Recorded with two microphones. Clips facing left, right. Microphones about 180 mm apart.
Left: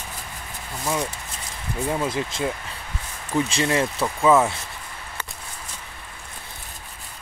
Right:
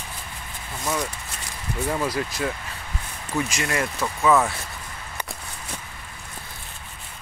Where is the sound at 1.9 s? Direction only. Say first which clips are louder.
Left 1 dB; 20° left (ahead or behind).